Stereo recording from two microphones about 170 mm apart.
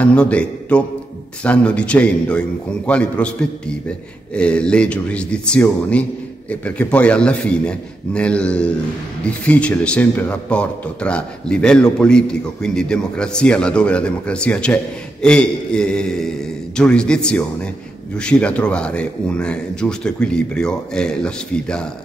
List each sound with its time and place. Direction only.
0.0 s a man's voice: 5° left (ahead or behind)